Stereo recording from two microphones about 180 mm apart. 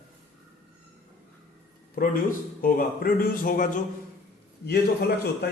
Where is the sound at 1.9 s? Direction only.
50° left (ahead or behind).